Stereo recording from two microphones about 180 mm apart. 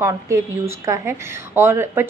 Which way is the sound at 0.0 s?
15° right (ahead or behind).